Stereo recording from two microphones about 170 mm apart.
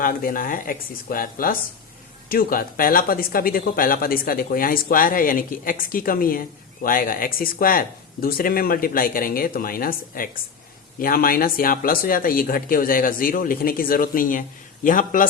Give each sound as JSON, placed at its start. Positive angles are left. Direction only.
{"t": 0.0, "sound": "a man's voice", "side_deg": 55}